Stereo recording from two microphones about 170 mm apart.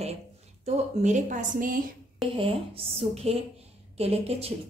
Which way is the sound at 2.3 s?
35° right (ahead or behind).